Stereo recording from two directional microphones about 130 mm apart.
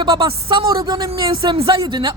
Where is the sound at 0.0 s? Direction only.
40° right (ahead or behind).